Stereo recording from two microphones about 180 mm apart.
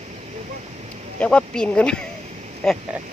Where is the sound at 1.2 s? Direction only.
5° left (ahead or behind).